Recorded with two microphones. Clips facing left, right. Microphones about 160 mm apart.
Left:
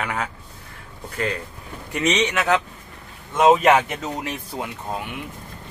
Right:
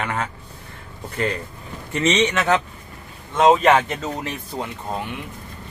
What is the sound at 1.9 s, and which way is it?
Speech, 10° left (ahead or behind).